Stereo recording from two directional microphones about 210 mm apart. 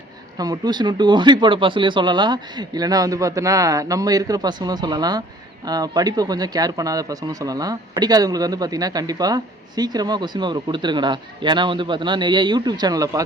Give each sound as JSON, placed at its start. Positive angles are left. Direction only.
{"t": 0.3, "sound": "speech", "side_deg": -20}